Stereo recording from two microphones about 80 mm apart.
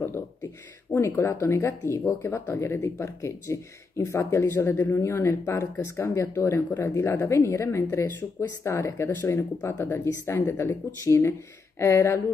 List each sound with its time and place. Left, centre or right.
0.9 s speech: left
1.2 s speech: left